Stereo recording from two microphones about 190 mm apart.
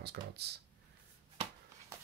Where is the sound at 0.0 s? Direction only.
60° right (ahead or behind).